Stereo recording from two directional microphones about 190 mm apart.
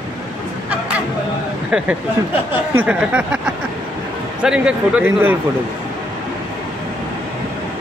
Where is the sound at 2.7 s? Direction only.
10° right (ahead or behind).